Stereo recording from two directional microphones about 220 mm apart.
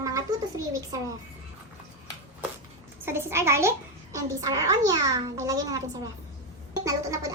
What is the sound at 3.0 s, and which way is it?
Speech, 10° right (ahead or behind).